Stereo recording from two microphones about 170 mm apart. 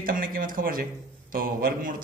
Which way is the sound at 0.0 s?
55° right (ahead or behind).